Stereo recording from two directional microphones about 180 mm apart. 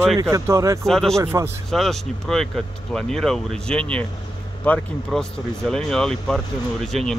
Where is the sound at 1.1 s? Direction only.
15° right (ahead or behind).